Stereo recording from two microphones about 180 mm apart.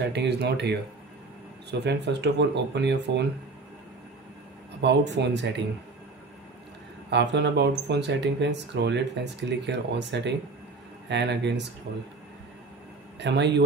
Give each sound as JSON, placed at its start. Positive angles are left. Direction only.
{"t": 0.0, "sound": "speech", "side_deg": -70}
{"t": 4.8, "sound": "speech", "side_deg": -75}
{"t": 7.1, "sound": "speech", "side_deg": -70}
{"t": 13.2, "sound": "speech", "side_deg": -70}